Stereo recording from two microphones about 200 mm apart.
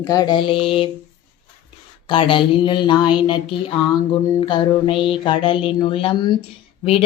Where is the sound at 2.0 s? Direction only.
25° left (ahead or behind).